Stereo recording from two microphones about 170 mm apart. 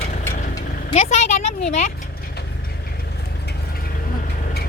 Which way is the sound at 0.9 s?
40° left (ahead or behind).